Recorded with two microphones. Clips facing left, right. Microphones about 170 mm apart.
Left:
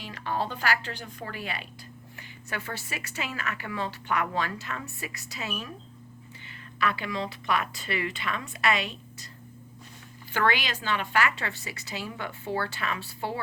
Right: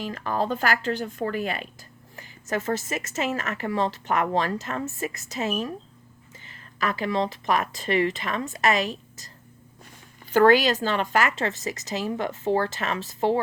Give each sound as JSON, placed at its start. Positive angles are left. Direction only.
{"t": 0.0, "sound": "speech", "side_deg": -45}
{"t": 6.7, "sound": "speech", "side_deg": -40}
{"t": 10.3, "sound": "speech", "side_deg": -40}